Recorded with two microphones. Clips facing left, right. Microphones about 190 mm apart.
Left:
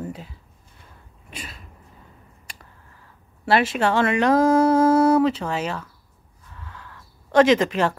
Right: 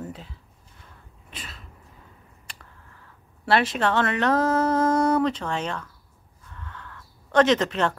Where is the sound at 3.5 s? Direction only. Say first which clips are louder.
Left 2 dB; 5° left (ahead or behind).